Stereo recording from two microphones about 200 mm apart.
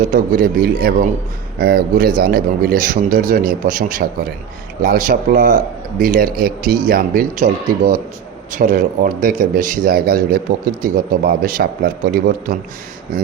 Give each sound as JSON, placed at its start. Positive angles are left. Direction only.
{"t": 0.0, "sound": "a man's voice", "side_deg": -40}